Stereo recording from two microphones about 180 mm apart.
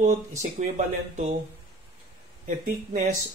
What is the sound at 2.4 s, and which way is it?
Speech, 45° right (ahead or behind).